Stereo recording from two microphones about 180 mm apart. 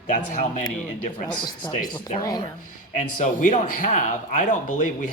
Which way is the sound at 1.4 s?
25° left (ahead or behind).